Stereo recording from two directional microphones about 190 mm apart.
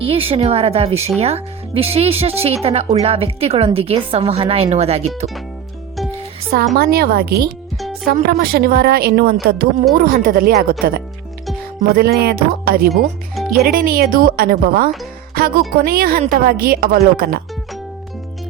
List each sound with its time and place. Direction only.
0.0 s speech: 30° right (ahead or behind)
6.7 s a woman's voice: 55° right (ahead or behind)